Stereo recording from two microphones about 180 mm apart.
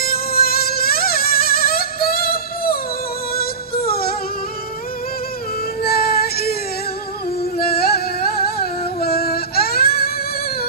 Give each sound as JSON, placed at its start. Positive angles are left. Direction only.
{"t": 0.0, "sound": "music", "side_deg": 55}
{"t": 5.8, "sound": "music", "side_deg": 60}
{"t": 7.5, "sound": "music", "side_deg": 60}